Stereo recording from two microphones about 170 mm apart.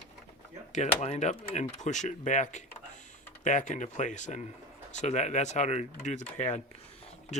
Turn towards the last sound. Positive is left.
turn(degrees=40)  # may be behind; listen again after turning